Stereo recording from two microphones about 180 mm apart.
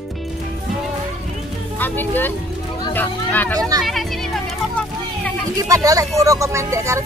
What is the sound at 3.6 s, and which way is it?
Speech, 20° right (ahead or behind).